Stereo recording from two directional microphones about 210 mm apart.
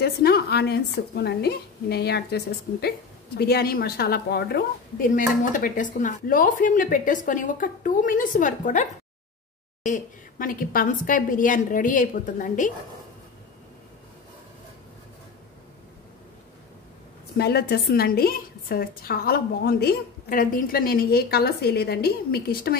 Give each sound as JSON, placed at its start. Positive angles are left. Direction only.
{"t": 0.0, "sound": "a woman's voice", "side_deg": 50}
{"t": 9.8, "sound": "a woman's voice", "side_deg": 40}
{"t": 17.4, "sound": "a woman's voice", "side_deg": 50}